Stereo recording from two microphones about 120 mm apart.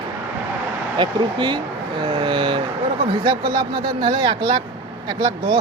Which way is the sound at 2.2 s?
40° right (ahead or behind).